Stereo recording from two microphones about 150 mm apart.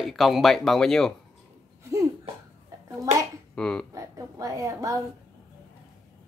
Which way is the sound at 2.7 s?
20° right (ahead or behind).